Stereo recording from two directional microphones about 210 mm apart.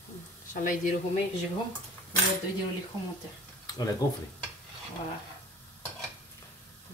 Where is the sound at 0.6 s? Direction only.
40° left (ahead or behind).